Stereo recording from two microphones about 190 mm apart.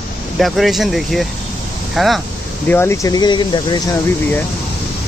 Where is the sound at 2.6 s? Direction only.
10° left (ahead or behind).